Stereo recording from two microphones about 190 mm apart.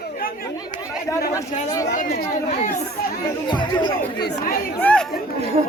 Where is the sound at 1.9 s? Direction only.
45° left (ahead or behind).